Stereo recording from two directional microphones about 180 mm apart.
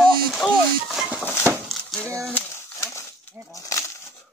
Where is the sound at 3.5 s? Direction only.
20° left (ahead or behind).